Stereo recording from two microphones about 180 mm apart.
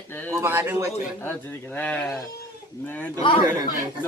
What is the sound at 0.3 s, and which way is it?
Speech, 15° right (ahead or behind).